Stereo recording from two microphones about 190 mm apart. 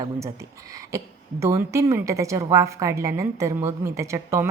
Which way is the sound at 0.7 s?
15° right (ahead or behind).